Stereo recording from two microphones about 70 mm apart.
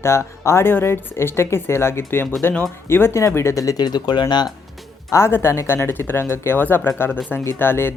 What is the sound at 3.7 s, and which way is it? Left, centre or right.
Speech, left.